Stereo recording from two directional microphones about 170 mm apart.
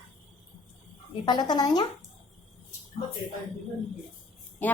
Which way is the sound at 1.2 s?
25° left (ahead or behind).